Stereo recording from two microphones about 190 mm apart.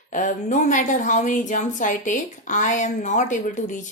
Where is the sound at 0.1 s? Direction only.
40° left (ahead or behind).